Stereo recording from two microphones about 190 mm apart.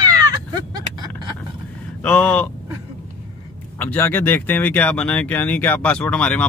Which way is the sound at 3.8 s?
10° left (ahead or behind).